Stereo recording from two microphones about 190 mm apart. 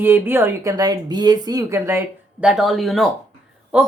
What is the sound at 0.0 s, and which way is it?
Speech, 10° right (ahead or behind).